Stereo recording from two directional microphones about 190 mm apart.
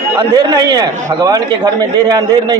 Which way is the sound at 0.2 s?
20° right (ahead or behind).